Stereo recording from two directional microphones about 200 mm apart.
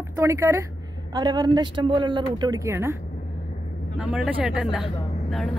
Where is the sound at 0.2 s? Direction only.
15° right (ahead or behind).